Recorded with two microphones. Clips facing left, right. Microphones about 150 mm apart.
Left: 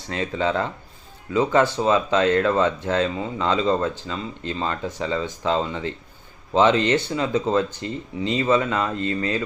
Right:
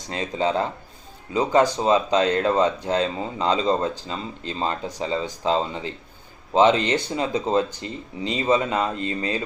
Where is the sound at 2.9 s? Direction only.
30° right (ahead or behind).